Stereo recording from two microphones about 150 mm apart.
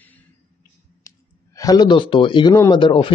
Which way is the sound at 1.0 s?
20° left (ahead or behind).